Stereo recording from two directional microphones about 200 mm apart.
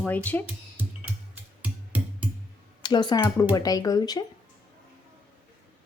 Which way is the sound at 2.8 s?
20° left (ahead or behind).